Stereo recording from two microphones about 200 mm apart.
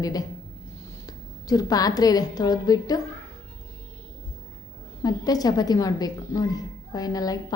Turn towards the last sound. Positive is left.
turn(degrees=20)  # may be behind; listen again after turning